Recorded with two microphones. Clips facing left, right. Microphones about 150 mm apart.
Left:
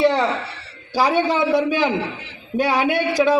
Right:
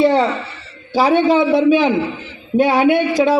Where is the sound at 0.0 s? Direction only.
20° right (ahead or behind).